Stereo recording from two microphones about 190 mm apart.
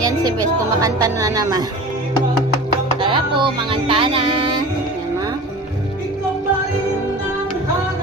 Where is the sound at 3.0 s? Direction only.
25° right (ahead or behind).